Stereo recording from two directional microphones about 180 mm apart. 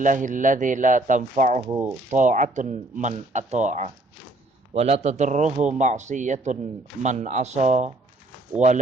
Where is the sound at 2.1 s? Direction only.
45° right (ahead or behind).